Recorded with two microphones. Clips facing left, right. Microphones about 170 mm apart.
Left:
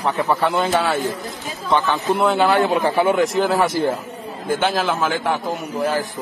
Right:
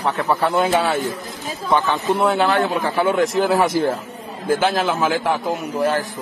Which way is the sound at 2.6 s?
20° left (ahead or behind).